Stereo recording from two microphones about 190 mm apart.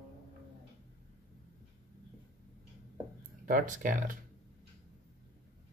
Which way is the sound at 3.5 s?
45° right (ahead or behind).